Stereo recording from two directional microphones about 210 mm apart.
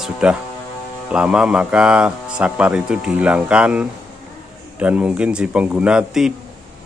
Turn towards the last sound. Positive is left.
turn(degrees=-5)  # may be behind; listen again after turning